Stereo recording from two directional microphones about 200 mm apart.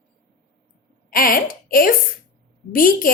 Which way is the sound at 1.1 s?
45° left (ahead or behind).